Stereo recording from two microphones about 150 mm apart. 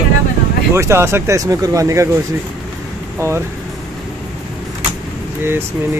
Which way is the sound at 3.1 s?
15° right (ahead or behind).